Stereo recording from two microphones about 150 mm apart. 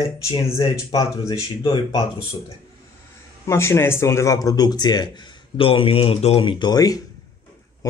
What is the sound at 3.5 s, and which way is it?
Speech, 15° left (ahead or behind).